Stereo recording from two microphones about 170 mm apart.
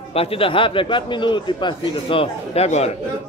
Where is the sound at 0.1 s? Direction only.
35° left (ahead or behind).